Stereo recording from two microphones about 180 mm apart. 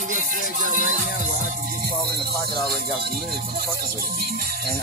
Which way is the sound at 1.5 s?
55° right (ahead or behind).